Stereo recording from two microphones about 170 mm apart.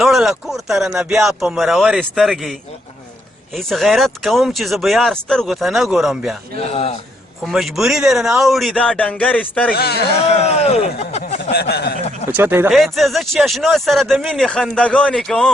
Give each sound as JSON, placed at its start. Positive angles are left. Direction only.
{"t": 0.0, "sound": "speech", "side_deg": 0}
{"t": 6.7, "sound": "a man's voice", "side_deg": 35}
{"t": 7.4, "sound": "speech", "side_deg": 0}
{"t": 9.7, "sound": "speech", "side_deg": 70}
{"t": 10.4, "sound": "speech", "side_deg": 40}
{"t": 11.5, "sound": "speech", "side_deg": 70}
{"t": 12.3, "sound": "speech", "side_deg": -15}
{"t": 12.7, "sound": "speech", "side_deg": 0}